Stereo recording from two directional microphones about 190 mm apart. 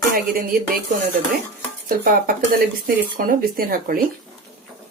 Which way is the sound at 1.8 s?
50° right (ahead or behind).